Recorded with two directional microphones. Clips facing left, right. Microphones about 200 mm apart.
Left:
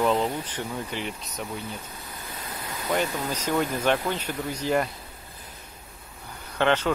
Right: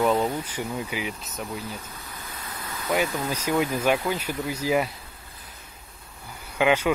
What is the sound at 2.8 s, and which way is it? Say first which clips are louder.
Speech: right 1 dB; 5° right (ahead or behind).